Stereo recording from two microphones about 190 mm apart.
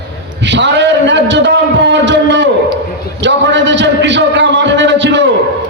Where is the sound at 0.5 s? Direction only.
70° right (ahead or behind).